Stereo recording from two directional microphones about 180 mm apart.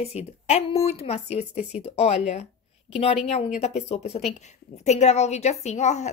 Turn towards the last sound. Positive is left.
turn(degrees=40)  # may be behind; listen again after turning